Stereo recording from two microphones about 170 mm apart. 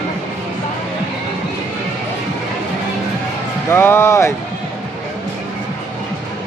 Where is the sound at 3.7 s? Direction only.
15° left (ahead or behind).